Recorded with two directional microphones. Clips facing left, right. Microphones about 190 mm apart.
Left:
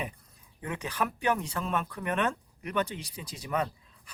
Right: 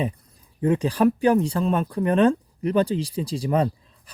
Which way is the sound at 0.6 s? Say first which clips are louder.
Right 14 dB; 30° right (ahead or behind).